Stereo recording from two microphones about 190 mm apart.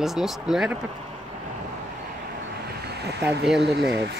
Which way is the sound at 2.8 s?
60° right (ahead or behind).